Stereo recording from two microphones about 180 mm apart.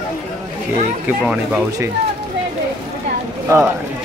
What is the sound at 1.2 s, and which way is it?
Speech, 5° right (ahead or behind).